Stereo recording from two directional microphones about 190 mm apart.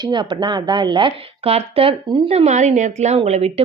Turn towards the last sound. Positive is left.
turn(degrees=-35)  # may be behind; listen again after turning